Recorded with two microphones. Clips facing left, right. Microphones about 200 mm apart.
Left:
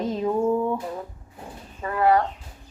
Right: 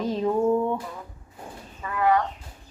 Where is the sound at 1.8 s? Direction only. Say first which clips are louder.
Left 3 dB; 35° left (ahead or behind).